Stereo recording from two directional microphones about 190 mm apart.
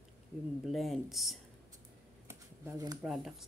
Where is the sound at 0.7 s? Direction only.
Centre (ahead or behind).